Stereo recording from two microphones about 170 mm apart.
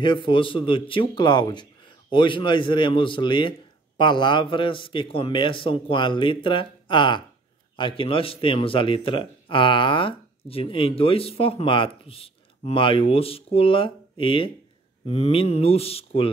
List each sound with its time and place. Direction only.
0.0 s a man's voice: 30° left (ahead or behind)